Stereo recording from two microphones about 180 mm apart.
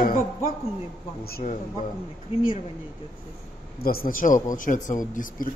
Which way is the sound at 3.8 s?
55° left (ahead or behind).